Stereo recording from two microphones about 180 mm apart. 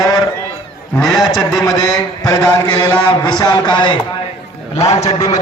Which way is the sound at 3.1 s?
25° left (ahead or behind).